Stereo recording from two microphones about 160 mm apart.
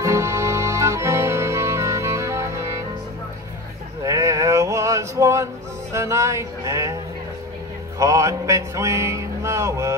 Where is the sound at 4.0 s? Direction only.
20° right (ahead or behind).